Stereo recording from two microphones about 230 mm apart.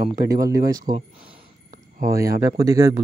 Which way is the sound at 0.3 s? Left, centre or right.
Centre.